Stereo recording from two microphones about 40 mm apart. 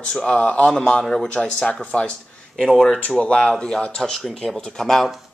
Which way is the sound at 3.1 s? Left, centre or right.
Left.